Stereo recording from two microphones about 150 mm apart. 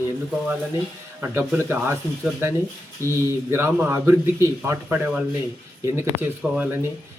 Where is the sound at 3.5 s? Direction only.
15° right (ahead or behind).